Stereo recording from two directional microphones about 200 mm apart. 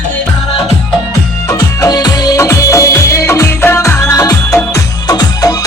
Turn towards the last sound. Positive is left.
turn(degrees=20)  # may be behind; listen again after turning